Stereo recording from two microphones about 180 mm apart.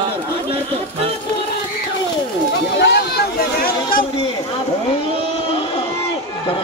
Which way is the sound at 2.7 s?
65° left (ahead or behind).